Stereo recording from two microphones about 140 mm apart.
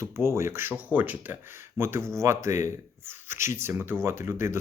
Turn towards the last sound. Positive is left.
turn(degrees=-20)  # may be behind; listen again after turning